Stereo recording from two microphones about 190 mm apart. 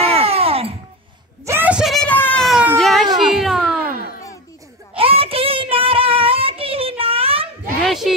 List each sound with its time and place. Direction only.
0.0 s music: 30° right (ahead or behind)
1.4 s wail: 10° right (ahead or behind)
2.8 s a sound: centre (ahead or behind)
3.2 s cat: centre (ahead or behind)
4.9 s child singing: 30° right (ahead or behind)
7.8 s a sound: centre (ahead or behind)